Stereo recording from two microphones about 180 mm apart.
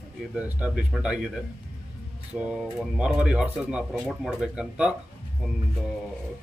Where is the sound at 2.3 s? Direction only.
5° right (ahead or behind).